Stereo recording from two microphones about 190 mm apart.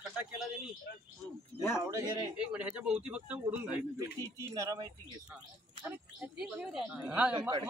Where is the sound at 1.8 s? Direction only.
15° right (ahead or behind).